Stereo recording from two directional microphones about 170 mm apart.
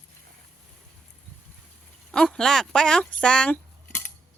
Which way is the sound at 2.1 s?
5° left (ahead or behind).